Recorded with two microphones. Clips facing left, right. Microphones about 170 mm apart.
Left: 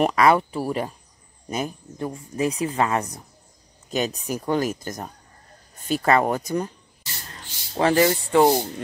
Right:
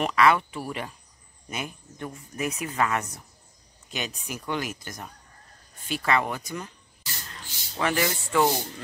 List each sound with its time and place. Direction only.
0.0 s speech: 40° left (ahead or behind)